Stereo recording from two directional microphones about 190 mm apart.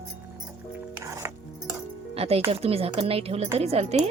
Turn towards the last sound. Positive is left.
turn(degrees=-35)  # may be behind; listen again after turning